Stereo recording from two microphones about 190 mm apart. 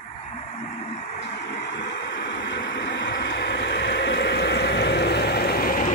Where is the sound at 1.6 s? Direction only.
65° left (ahead or behind); by 5.9 s 50° left (ahead or behind).